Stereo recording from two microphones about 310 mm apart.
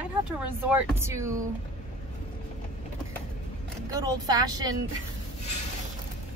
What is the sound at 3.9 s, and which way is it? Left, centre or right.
Speech, centre.